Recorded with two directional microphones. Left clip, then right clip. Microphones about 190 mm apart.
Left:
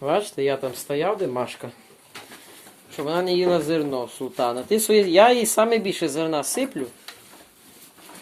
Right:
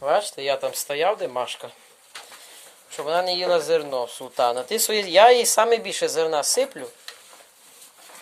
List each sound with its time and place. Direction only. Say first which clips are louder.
0.0 s speech: even; 15° right (ahead or behind)
1.3 s speech: even; 15° right (ahead or behind)
3.0 s speech: left 1 dB; 20° right (ahead or behind)